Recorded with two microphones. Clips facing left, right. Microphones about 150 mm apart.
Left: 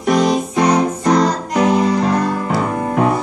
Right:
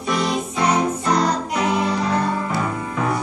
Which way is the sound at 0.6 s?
65° left (ahead or behind).